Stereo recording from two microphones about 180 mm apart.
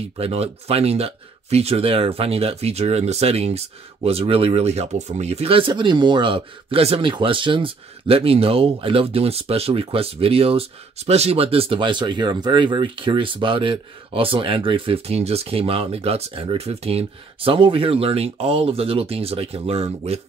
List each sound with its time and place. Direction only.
0.2 s speech: 35° right (ahead or behind)